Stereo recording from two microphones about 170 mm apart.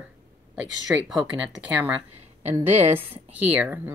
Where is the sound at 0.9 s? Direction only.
10° right (ahead or behind).